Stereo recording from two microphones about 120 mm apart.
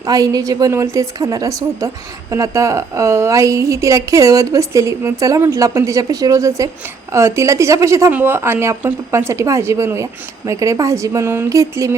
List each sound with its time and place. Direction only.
0.0 s a woman's voice: 30° right (ahead or behind)